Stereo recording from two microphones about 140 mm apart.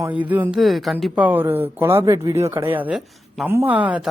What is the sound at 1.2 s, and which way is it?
Speech, 15° right (ahead or behind).